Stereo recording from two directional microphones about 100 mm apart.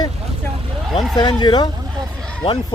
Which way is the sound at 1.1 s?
45° left (ahead or behind).